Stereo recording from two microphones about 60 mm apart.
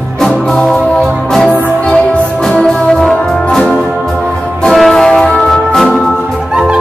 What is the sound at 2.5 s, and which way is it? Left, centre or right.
Music, centre.